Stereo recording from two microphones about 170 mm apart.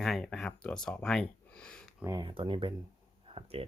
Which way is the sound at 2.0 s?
20° right (ahead or behind).